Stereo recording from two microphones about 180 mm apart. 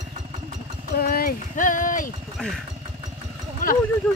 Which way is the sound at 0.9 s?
60° left (ahead or behind).